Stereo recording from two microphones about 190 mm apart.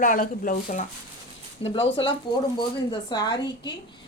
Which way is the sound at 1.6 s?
30° left (ahead or behind).